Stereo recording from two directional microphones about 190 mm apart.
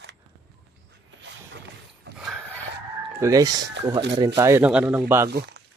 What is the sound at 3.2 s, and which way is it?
Speech, 20° right (ahead or behind).